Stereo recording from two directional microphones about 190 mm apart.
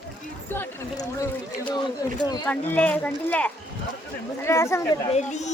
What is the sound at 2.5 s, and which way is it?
Speech, 5° left (ahead or behind).